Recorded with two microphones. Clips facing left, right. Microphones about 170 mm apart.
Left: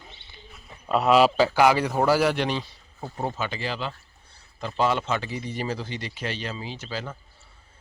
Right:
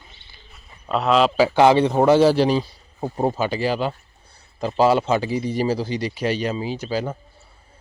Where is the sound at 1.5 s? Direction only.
25° right (ahead or behind).